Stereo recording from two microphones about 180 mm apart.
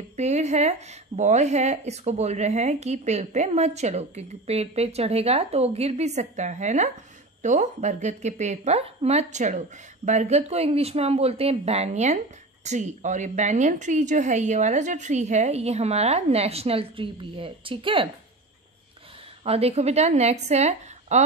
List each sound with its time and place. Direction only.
0.1 s a woman's voice: 40° right (ahead or behind)
19.4 s a woman's voice: 35° right (ahead or behind)